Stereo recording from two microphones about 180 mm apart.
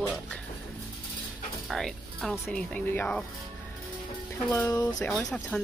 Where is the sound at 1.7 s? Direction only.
5° left (ahead or behind).